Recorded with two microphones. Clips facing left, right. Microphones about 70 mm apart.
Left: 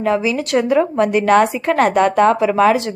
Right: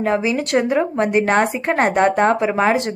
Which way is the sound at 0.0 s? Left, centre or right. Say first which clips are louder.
Left 1 dB; right.